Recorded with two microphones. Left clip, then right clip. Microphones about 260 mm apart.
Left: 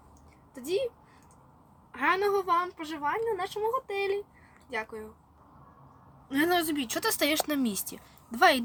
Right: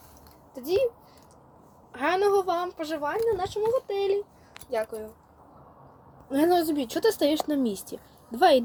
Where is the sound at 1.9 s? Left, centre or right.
Centre.